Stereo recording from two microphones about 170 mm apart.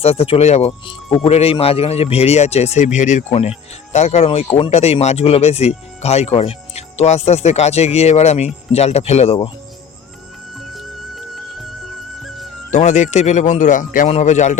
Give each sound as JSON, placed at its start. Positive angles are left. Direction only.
{"t": 0.0, "sound": "speech", "side_deg": 35}
{"t": 10.8, "sound": "music", "side_deg": 0}
{"t": 12.7, "sound": "speech", "side_deg": 45}